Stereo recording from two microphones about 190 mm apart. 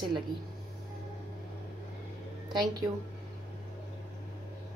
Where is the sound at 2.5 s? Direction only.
20° right (ahead or behind).